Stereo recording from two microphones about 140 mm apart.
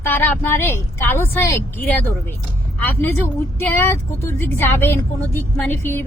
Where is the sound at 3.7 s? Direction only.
15° left (ahead or behind).